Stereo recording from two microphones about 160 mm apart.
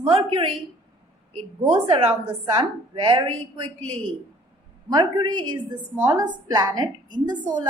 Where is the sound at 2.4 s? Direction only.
30° right (ahead or behind).